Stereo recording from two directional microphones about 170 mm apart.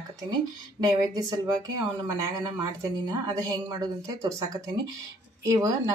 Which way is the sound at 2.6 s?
20° right (ahead or behind).